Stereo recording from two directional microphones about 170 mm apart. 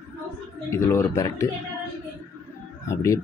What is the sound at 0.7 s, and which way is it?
Speech, 15° left (ahead or behind).